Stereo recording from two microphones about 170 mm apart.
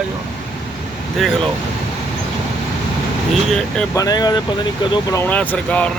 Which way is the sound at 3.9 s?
20° left (ahead or behind).